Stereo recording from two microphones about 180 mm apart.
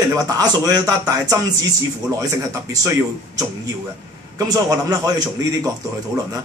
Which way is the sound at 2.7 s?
20° right (ahead or behind).